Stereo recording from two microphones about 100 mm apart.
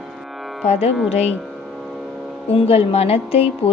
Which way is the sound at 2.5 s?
80° left.